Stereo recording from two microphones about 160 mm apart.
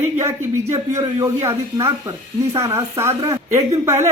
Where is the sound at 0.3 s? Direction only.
20° right (ahead or behind).